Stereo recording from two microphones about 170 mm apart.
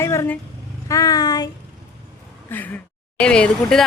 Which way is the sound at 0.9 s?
20° left (ahead or behind).